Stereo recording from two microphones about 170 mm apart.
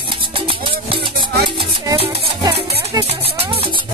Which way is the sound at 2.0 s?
35° right (ahead or behind).